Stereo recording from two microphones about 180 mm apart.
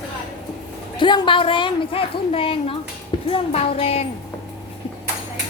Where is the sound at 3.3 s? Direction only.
35° left (ahead or behind).